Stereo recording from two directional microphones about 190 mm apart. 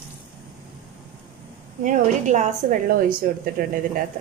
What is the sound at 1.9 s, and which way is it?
Speech, 40° right (ahead or behind).